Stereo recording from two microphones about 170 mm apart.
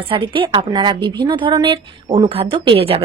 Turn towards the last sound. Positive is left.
turn(degrees=-35)  # may be behind; listen again after turning